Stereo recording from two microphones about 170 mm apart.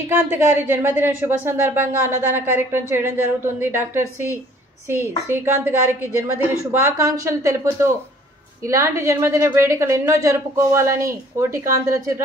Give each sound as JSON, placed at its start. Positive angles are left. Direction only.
{"t": 0.1, "sound": "a woman's voice", "side_deg": -15}